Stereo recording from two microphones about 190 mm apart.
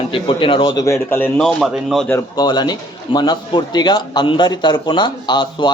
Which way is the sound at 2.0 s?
15° left (ahead or behind).